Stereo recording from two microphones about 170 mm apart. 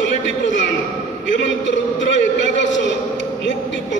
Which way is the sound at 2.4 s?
90° left.